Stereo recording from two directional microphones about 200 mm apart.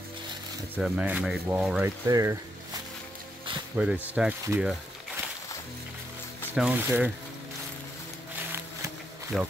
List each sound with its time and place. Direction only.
0.7 s speech: 5° right (ahead or behind)
2.0 s speech: 20° right (ahead or behind)
3.7 s speech: 5° right (ahead or behind)
6.5 s speech: 5° right (ahead or behind)
9.3 s speech: centre (ahead or behind)